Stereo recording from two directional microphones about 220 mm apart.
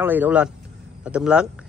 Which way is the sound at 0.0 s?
10° right (ahead or behind).